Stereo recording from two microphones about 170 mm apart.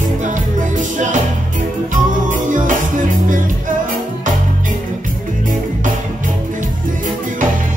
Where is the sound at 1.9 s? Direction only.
50° right (ahead or behind).